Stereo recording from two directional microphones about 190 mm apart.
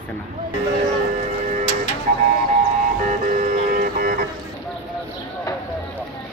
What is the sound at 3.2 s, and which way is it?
Music, 40° right (ahead or behind).